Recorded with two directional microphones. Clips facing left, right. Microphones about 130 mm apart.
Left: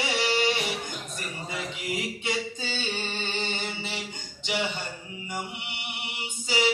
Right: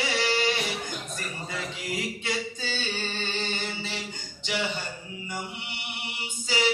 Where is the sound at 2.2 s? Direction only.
20° left (ahead or behind).